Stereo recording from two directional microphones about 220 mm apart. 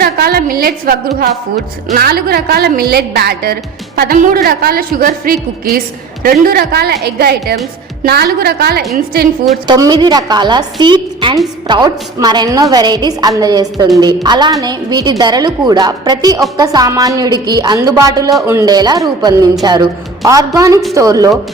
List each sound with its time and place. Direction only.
0.0 s a woman's voice: 45° right (ahead or behind)
6.4 s a woman's voice: 45° right (ahead or behind)
9.6 s a woman's voice: 20° right (ahead or behind)